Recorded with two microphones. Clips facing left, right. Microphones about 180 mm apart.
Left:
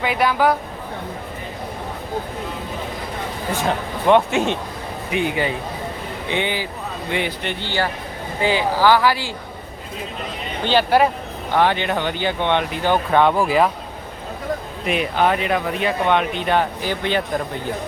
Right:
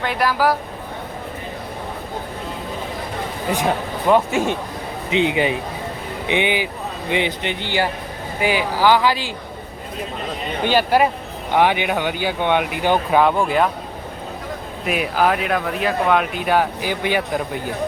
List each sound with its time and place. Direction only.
0.0 s speech: centre (ahead or behind)
4.0 s speech: 5° right (ahead or behind)
5.1 s speech: 20° right (ahead or behind)
10.7 s speech: 10° right (ahead or behind)
14.8 s speech: 5° right (ahead or behind)